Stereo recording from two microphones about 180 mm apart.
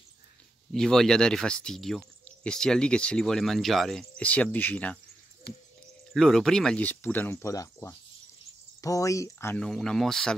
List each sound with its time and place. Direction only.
0.7 s speech: 5° left (ahead or behind)
5.5 s owl: 60° left (ahead or behind)
6.1 s speech: centre (ahead or behind)